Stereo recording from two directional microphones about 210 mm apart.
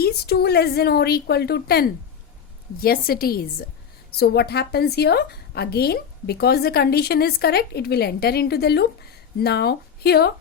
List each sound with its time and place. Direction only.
0.0 s a woman's voice: 50° left (ahead or behind)